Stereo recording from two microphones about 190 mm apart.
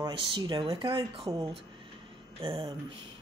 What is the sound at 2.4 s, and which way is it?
Speech, 25° right (ahead or behind).